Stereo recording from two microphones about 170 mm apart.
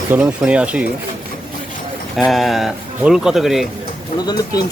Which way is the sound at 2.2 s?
Centre (ahead or behind).